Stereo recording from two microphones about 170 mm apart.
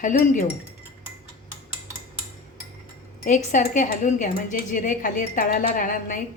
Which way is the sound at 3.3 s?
45° left (ahead or behind).